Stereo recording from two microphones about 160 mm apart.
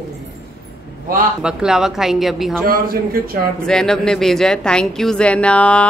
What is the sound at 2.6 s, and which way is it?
Speech, 65° right (ahead or behind).